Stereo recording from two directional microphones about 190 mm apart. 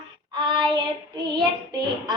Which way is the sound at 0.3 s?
25° right (ahead or behind).